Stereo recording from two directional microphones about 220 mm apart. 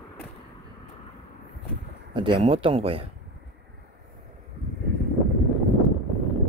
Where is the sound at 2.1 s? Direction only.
20° right (ahead or behind).